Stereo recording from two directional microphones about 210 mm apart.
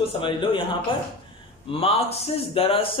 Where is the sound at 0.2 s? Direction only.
25° left (ahead or behind).